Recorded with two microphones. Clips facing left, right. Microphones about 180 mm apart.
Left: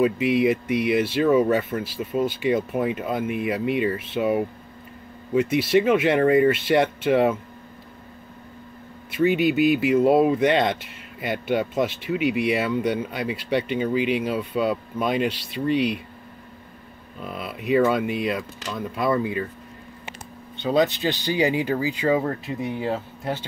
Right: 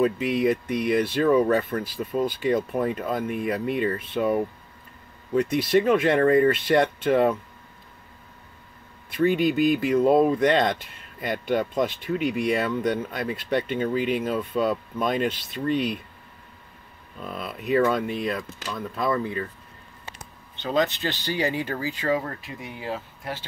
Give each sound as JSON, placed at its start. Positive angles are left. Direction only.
{"t": 0.0, "sound": "speech", "side_deg": 5}
{"t": 9.1, "sound": "speech", "side_deg": 5}
{"t": 17.2, "sound": "speech", "side_deg": 5}
{"t": 20.6, "sound": "speech", "side_deg": 10}